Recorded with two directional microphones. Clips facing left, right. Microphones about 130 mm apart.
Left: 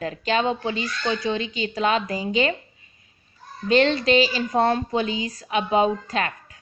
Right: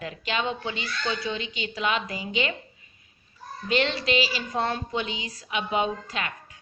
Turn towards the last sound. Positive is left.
turn(degrees=40)  # may be behind; listen again after turning